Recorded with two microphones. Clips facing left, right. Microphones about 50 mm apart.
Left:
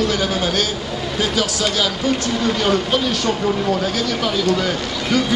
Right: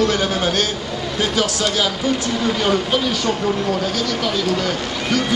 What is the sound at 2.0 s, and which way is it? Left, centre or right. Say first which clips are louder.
Speech: even; centre.